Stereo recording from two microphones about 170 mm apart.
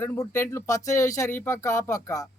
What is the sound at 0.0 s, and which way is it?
Speech, 15° left (ahead or behind).